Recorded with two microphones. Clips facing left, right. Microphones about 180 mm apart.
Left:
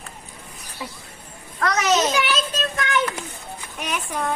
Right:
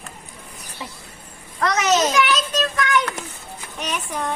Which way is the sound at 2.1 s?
30° left (ahead or behind).